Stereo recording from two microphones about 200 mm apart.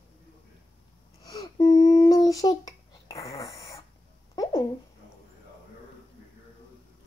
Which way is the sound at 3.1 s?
30° left (ahead or behind).